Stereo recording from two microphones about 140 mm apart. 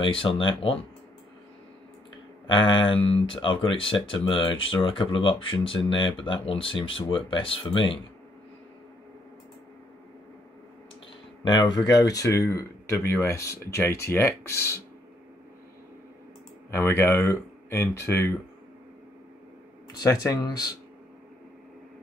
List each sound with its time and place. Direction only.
0.0 s speech: 40° left (ahead or behind)
2.4 s speech: 35° left (ahead or behind)
11.4 s speech: 30° left (ahead or behind)
16.7 s speech: 15° left (ahead or behind)
20.0 s speech: 25° left (ahead or behind)